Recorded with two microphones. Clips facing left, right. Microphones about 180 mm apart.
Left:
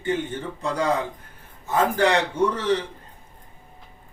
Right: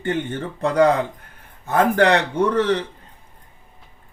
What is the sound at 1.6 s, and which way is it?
Speech, 60° right (ahead or behind).